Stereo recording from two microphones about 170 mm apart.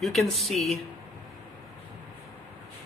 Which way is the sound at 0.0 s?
Centre (ahead or behind).